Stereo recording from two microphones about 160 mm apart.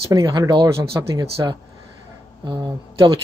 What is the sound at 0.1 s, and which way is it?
Speech, 20° right (ahead or behind).